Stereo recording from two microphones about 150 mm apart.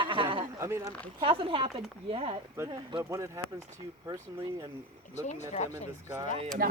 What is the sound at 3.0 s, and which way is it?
Speech, 20° right (ahead or behind).